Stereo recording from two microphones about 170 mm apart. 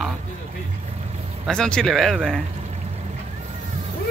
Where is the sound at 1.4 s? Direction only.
5° left (ahead or behind).